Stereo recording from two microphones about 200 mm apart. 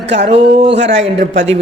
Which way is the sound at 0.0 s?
60° right (ahead or behind).